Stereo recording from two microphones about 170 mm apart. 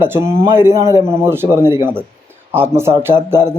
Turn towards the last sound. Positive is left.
turn(degrees=-15)  # may be behind; listen again after turning